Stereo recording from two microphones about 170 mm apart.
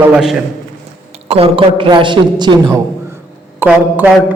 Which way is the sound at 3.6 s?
10° right (ahead or behind).